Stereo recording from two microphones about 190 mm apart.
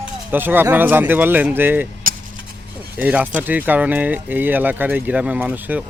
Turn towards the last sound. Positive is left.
turn(degrees=-10)  # may be behind; listen again after turning